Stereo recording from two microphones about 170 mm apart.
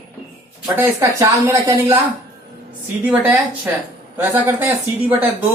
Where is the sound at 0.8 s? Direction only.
15° right (ahead or behind).